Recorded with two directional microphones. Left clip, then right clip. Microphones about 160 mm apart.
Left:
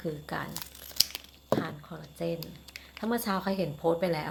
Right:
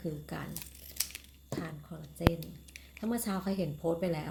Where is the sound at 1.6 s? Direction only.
15° right (ahead or behind).